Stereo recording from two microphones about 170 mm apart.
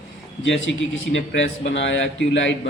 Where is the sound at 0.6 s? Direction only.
90° left.